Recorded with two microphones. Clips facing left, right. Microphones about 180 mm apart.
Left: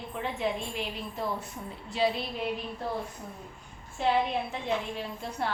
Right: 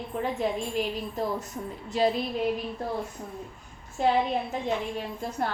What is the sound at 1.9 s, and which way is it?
Speech, 45° right (ahead or behind).